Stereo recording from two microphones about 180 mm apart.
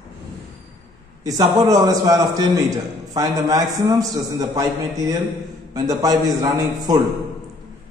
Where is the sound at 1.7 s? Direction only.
20° right (ahead or behind).